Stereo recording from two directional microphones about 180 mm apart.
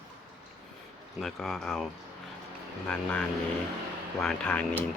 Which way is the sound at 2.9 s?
5° left (ahead or behind).